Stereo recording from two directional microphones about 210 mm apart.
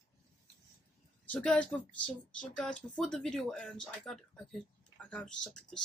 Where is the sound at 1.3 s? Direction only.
5° left (ahead or behind).